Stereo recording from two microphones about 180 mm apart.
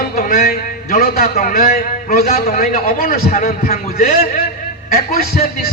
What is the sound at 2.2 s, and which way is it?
Speech, 40° left (ahead or behind).